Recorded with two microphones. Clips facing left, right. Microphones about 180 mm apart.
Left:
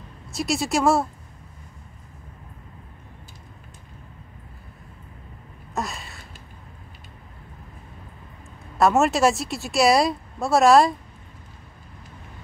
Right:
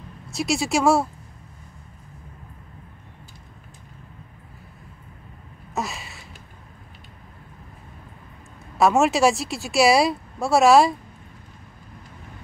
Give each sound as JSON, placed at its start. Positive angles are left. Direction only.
{"t": 0.3, "sound": "speech", "side_deg": 0}
{"t": 5.8, "sound": "a sound", "side_deg": 0}
{"t": 8.7, "sound": "speech", "side_deg": 0}